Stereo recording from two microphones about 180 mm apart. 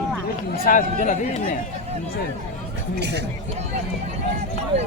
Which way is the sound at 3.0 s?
70° right (ahead or behind).